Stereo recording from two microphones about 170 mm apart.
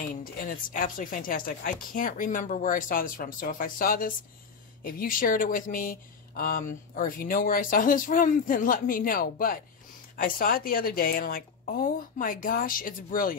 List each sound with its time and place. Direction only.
0.2 s speech: 55° left (ahead or behind)